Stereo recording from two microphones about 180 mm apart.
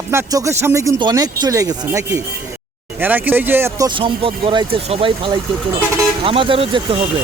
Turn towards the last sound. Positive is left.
turn(degrees=-30)  # may be behind; listen again after turning